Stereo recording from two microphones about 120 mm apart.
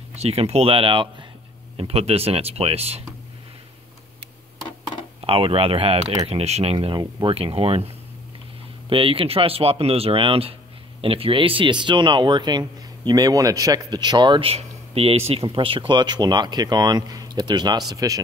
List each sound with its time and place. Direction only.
0.1 s speech: 60° right (ahead or behind)
5.2 s speech: 50° right (ahead or behind)
7.0 s speech: 40° right (ahead or behind)
7.3 s speech: 55° right (ahead or behind); by 18.2 s 30° right (ahead or behind)